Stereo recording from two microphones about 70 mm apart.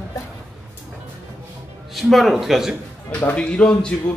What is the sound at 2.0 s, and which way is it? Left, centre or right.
Speech, centre.